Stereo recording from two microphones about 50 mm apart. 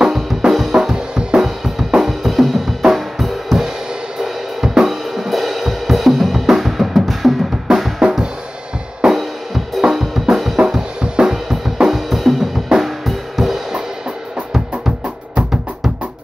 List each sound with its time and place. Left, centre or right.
0.0 s drum kit: centre
1.9 s drum kit: centre
4.2 s music: centre
9.0 s drum kit: centre
10.6 s drum kit: centre
15.3 s music: centre